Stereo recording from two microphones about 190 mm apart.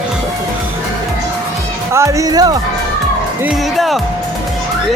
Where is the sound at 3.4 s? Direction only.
Centre (ahead or behind).